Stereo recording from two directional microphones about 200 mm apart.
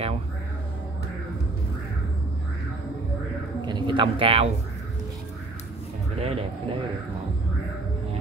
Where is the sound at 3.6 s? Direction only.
20° right (ahead or behind).